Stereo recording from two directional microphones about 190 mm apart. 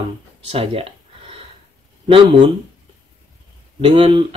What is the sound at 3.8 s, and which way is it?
Speech, 30° right (ahead or behind).